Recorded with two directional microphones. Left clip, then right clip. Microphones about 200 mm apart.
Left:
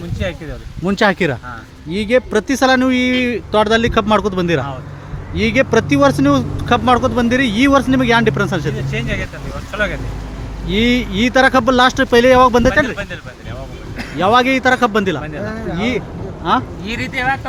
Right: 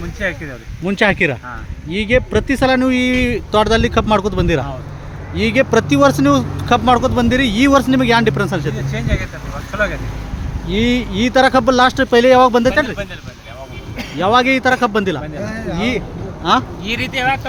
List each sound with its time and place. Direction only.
0.2 s speech: 20° left (ahead or behind)
9.7 s speech: 15° left (ahead or behind)
14.2 s speech: 10° left (ahead or behind)
16.8 s speech: 20° right (ahead or behind)